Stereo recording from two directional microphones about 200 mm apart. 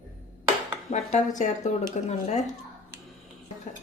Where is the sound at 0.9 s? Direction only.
35° left (ahead or behind).